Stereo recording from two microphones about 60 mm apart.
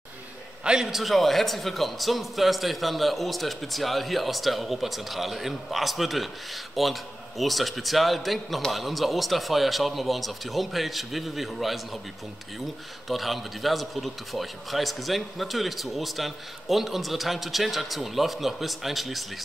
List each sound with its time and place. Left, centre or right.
0.7 s a man's voice: centre
13.1 s a man's voice: centre